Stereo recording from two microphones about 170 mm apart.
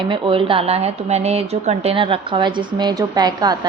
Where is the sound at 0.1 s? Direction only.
30° right (ahead or behind).